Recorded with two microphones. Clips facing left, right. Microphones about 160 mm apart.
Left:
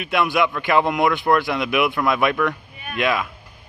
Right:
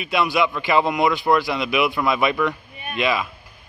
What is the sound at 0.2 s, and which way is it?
A man's voice, 5° right (ahead or behind).